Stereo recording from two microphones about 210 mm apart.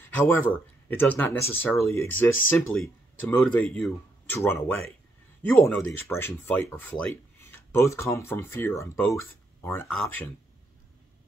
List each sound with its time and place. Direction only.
0.0 s speech: 10° left (ahead or behind)